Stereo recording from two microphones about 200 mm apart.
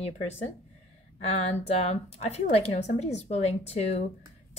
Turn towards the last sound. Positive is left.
turn(degrees=30)  # may be behind; listen again after turning